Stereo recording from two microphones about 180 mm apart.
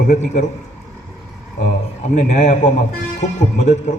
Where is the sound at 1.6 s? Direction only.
40° left (ahead or behind).